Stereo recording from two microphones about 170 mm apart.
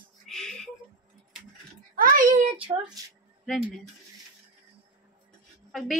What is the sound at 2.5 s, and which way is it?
Speech, 30° right (ahead or behind).